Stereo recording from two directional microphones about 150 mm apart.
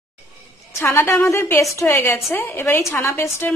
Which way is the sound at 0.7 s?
15° left (ahead or behind).